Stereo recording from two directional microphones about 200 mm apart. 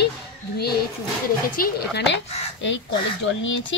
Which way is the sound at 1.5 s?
50° left (ahead or behind).